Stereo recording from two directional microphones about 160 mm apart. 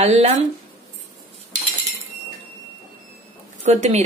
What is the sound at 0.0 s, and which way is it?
Speech, 40° right (ahead or behind).